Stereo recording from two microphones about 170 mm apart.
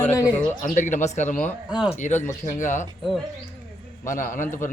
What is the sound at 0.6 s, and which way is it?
Speech, 45° left (ahead or behind).